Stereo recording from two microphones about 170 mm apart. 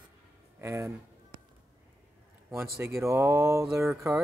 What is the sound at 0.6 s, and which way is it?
Speech, 15° right (ahead or behind).